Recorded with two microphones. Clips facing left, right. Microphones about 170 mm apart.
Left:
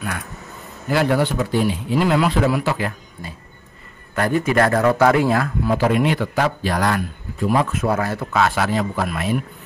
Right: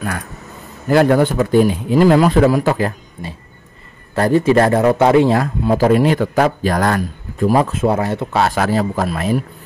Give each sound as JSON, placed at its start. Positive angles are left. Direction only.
{"t": 0.8, "sound": "a man's voice", "side_deg": -45}
{"t": 4.1, "sound": "speech", "side_deg": -30}
{"t": 7.8, "sound": "speech", "side_deg": -25}